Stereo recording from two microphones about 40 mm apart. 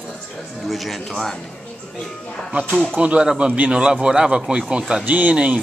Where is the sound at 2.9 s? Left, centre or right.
Right.